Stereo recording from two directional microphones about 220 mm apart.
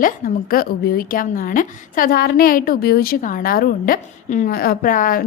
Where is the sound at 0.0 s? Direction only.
40° left (ahead or behind).